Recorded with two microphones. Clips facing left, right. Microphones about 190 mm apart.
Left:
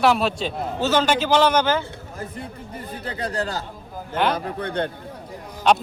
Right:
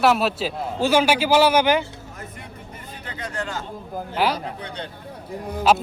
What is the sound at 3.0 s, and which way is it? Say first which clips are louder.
Speech: left 4 dB; 35° left (ahead or behind).